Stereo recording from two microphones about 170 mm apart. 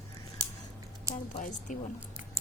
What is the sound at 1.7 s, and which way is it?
Speech, 50° left (ahead or behind).